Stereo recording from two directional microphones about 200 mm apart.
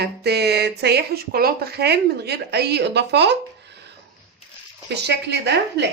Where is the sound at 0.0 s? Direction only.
55° right (ahead or behind).